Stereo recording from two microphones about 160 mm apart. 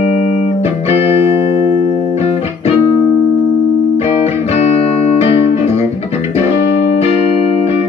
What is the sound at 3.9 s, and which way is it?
Music, 40° left (ahead or behind).